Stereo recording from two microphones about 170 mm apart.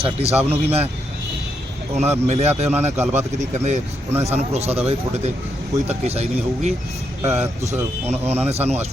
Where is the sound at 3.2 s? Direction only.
40° right (ahead or behind).